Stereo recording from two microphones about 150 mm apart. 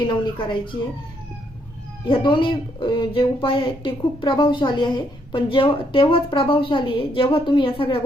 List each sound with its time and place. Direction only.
0.0 s speech: 30° left (ahead or behind)
2.0 s speech: 35° left (ahead or behind)